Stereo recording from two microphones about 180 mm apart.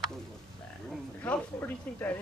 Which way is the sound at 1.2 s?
10° left (ahead or behind).